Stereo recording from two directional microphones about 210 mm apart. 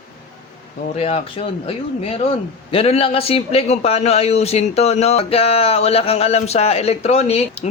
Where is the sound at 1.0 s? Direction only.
30° left (ahead or behind).